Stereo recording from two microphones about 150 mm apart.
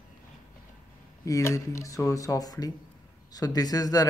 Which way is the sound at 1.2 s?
20° left (ahead or behind).